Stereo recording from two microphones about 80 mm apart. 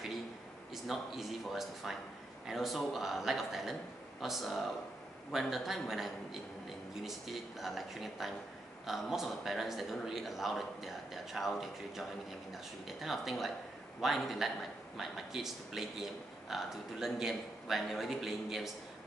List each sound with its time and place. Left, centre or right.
0.8 s speech: centre